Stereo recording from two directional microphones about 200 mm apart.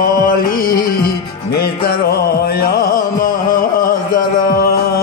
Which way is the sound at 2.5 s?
45° left (ahead or behind).